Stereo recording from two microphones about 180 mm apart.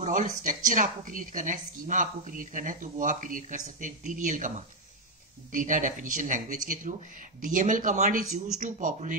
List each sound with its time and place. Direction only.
0.0 s a woman's voice: 45° right (ahead or behind)